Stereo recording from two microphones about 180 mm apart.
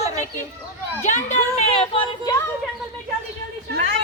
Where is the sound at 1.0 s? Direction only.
40° left (ahead or behind).